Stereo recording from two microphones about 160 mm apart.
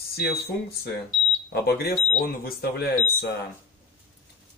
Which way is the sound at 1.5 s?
80° left.